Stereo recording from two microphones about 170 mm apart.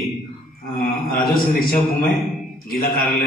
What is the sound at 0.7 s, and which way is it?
Speech, 60° left (ahead or behind).